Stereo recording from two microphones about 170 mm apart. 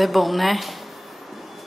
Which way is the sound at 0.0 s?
Centre (ahead or behind).